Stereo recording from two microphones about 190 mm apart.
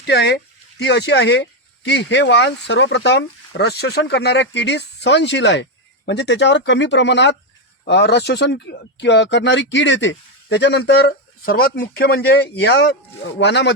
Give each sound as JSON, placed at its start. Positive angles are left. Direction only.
{"t": 0.0, "sound": "speech", "side_deg": 60}